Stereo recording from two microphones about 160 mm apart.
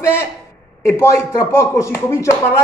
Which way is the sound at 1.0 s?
15° left (ahead or behind).